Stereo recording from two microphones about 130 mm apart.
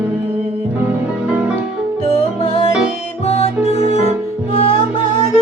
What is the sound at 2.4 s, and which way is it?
Music, 45° left (ahead or behind).